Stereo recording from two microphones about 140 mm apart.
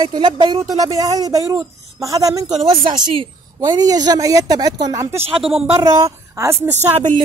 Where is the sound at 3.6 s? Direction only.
25° right (ahead or behind).